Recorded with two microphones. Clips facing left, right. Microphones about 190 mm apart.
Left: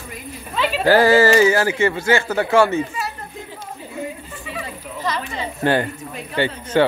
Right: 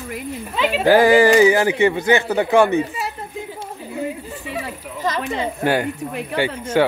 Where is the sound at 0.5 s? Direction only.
15° right (ahead or behind).